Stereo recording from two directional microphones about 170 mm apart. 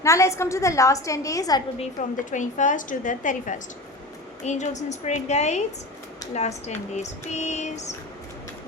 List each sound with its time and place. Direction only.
0.0 s a woman's voice: 15° left (ahead or behind)
1.8 s a woman's voice: 45° left (ahead or behind)
6.3 s female singing: 40° left (ahead or behind)